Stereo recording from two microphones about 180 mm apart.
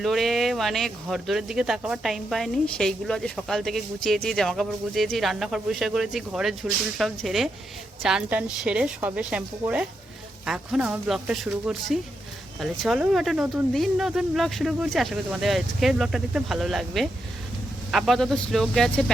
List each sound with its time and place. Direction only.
0.0 s a woman's voice: centre (ahead or behind)